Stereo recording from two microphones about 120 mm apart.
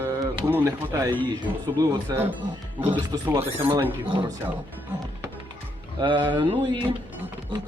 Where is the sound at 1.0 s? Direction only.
40° right (ahead or behind).